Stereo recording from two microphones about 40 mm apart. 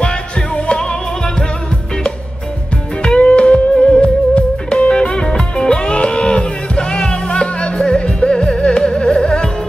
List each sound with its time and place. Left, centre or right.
0.6 s music: left
3.0 s music: left